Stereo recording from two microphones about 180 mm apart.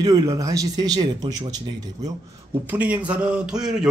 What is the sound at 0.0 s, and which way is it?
Speech, 20° right (ahead or behind).